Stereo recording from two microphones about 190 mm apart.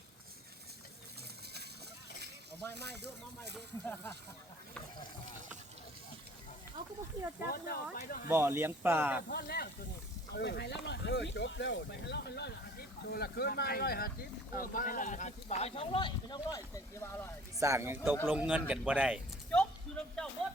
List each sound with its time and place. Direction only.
2.7 s speech: 60° right (ahead or behind)
3.8 s speech: 10° left (ahead or behind)
7.4 s speech: 55° left (ahead or behind)
8.3 s speech: 10° right (ahead or behind)
9.3 s speech: 55° left (ahead or behind); by 17.2 s 15° left (ahead or behind)
17.6 s speech: 15° right (ahead or behind)
19.5 s a sound: 5° left (ahead or behind)